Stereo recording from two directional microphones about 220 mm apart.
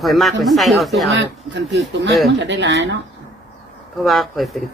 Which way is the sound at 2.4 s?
55° right (ahead or behind).